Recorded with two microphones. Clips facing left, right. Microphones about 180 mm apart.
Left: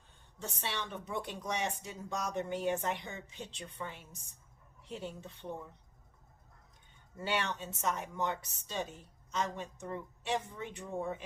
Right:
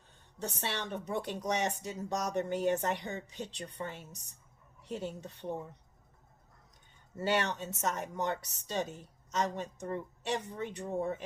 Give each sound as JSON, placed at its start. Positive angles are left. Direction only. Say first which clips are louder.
{"t": 0.3, "sound": "speech", "louder": "right 3 dB", "side_deg": -40}
{"t": 7.2, "sound": "speech", "louder": "right 4 dB", "side_deg": -40}
{"t": 9.3, "sound": "speech", "louder": "right 3 dB", "side_deg": -40}